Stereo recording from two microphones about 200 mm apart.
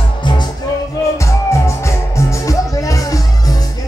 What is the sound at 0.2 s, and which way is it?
Music, 20° left (ahead or behind).